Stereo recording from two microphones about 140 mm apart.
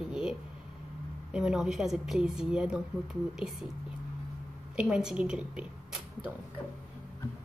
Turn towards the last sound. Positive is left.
turn(degrees=-5)  # may be behind; listen again after turning